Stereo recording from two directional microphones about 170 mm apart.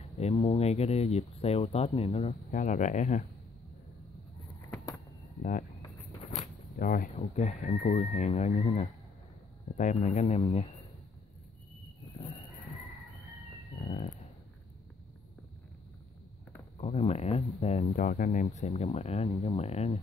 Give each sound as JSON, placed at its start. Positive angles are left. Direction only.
{"t": 0.2, "sound": "speech", "side_deg": 35}
{"t": 4.7, "sound": "a sound", "side_deg": 20}
{"t": 5.4, "sound": "speech", "side_deg": 50}
{"t": 9.9, "sound": "speech", "side_deg": 35}
{"t": 16.7, "sound": "speech", "side_deg": 35}